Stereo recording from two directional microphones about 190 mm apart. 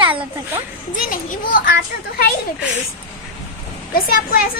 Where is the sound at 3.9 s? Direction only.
50° left (ahead or behind).